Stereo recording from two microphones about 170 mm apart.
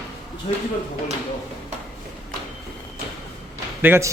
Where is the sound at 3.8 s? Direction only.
15° right (ahead or behind).